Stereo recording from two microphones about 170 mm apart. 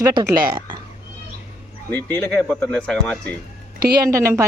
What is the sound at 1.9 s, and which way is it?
Speech, 10° left (ahead or behind).